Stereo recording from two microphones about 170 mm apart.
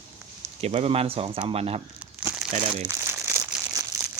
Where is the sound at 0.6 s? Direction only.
40° right (ahead or behind).